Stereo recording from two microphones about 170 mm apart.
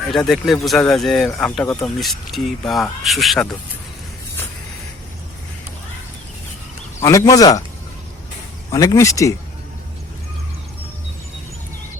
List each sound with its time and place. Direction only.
0.1 s speech: centre (ahead or behind)
7.0 s speech: 20° left (ahead or behind)
8.7 s speech: 20° left (ahead or behind)